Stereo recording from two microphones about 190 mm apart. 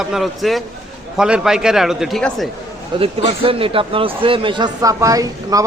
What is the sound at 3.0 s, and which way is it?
Speech, 30° right (ahead or behind).